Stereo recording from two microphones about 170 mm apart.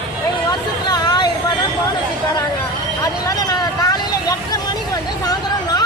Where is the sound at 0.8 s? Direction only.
25° left (ahead or behind).